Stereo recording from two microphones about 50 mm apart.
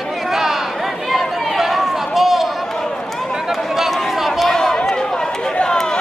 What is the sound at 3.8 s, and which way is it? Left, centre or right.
Chatter, centre.